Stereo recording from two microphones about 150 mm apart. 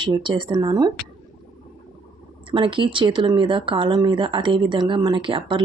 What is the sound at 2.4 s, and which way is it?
Speech, 35° right (ahead or behind).